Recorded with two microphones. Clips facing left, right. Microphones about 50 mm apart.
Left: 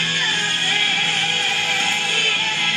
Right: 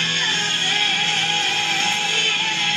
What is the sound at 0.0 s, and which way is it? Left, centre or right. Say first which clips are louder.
Music: left 1 dB; centre.